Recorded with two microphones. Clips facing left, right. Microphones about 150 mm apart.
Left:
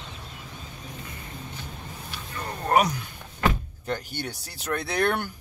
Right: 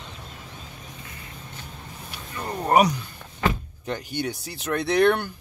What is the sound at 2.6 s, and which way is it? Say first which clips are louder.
Speech: right 3 dB; 10° right (ahead or behind).